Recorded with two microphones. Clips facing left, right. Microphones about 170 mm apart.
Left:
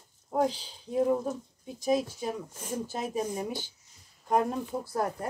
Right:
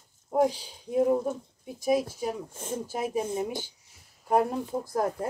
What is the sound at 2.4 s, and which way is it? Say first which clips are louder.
Speech: right 1 dB; 25° right (ahead or behind).